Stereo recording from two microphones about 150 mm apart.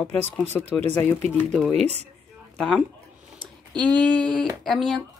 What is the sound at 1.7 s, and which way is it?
Speech, 45° right (ahead or behind).